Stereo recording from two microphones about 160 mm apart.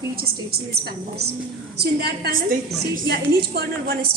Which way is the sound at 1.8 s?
85° right.